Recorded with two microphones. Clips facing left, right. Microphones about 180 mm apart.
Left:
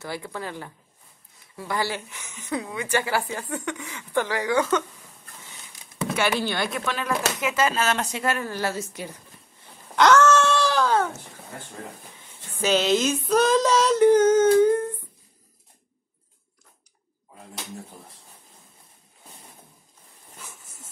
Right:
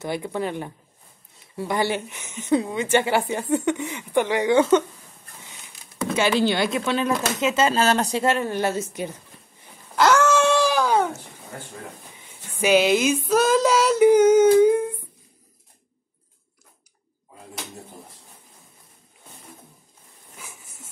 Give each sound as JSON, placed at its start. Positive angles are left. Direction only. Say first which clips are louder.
{"t": 0.0, "sound": "a woman's voice", "louder": "right 6 dB", "side_deg": -20}
{"t": 6.1, "sound": "a woman's voice", "louder": "right 5 dB", "side_deg": -20}
{"t": 9.9, "sound": "dog", "louder": "left 1 dB", "side_deg": -10}
{"t": 12.6, "sound": "female singing", "louder": "right 3 dB", "side_deg": -10}
{"t": 20.4, "sound": "a sound", "louder": "right 1 dB", "side_deg": -10}